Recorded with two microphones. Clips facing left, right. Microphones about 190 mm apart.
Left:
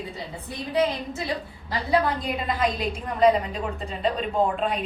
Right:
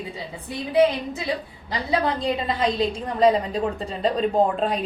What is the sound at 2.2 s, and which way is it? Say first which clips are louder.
A woman's voice: right 2 dB; 25° right (ahead or behind).